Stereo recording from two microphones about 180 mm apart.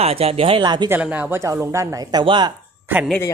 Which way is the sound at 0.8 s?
10° right (ahead or behind).